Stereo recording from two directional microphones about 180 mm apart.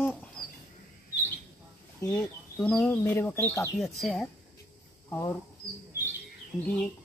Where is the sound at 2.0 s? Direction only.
15° left (ahead or behind).